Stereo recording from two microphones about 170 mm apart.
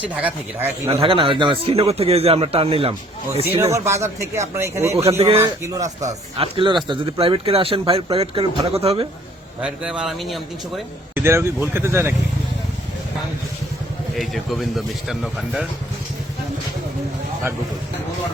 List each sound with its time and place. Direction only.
0.0 s a man's voice: 10° right (ahead or behind)
1.0 s speech: 30° right (ahead or behind)
3.6 s a man's voice: 15° right (ahead or behind)
6.0 s speech: 35° right (ahead or behind)
9.6 s speech: 5° right (ahead or behind)
11.1 s a man's voice: 15° right (ahead or behind)
14.2 s speech: centre (ahead or behind)